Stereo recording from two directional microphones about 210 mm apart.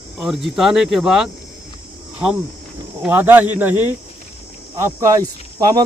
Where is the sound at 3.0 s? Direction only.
10° right (ahead or behind).